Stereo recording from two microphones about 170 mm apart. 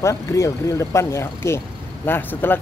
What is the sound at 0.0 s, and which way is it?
Speech, 20° left (ahead or behind).